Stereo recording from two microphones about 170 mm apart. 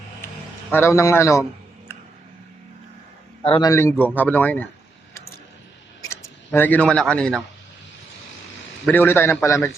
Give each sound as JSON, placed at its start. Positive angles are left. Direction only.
{"t": 0.7, "sound": "a man's voice", "side_deg": 15}
{"t": 3.4, "sound": "a man's voice", "side_deg": 30}
{"t": 3.7, "sound": "a man's voice", "side_deg": 15}
{"t": 6.0, "sound": "speech", "side_deg": 15}
{"t": 8.9, "sound": "a man's voice", "side_deg": 10}